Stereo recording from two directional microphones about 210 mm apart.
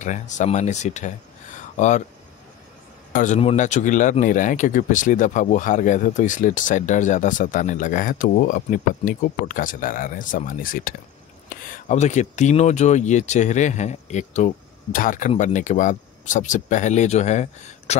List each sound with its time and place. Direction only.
0.0 s speech: 35° left (ahead or behind)
3.1 s speech: 35° left (ahead or behind)